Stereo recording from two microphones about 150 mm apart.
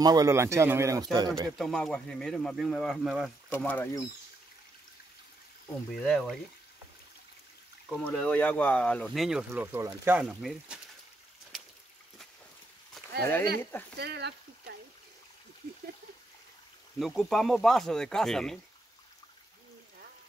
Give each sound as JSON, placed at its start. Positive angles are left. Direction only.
{"t": 0.0, "sound": "speech", "side_deg": -25}
{"t": 1.6, "sound": "speech", "side_deg": 5}
{"t": 3.5, "sound": "speech", "side_deg": 10}
{"t": 5.9, "sound": "speech", "side_deg": 0}
{"t": 7.9, "sound": "speech", "side_deg": 5}
{"t": 13.6, "sound": "speech", "side_deg": 15}
{"t": 13.9, "sound": "speech", "side_deg": -90}
{"t": 17.0, "sound": "speech", "side_deg": 0}